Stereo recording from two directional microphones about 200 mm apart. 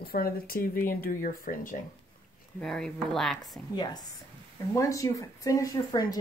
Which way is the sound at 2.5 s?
Centre (ahead or behind).